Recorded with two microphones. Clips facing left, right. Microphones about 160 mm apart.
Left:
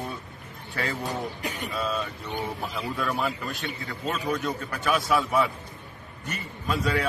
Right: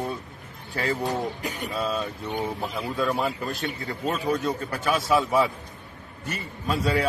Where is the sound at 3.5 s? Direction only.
40° right (ahead or behind).